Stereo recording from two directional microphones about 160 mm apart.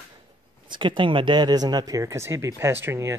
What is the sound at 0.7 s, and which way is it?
Speech, 30° right (ahead or behind).